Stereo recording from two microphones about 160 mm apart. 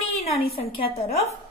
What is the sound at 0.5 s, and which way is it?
Speech, 35° left (ahead or behind).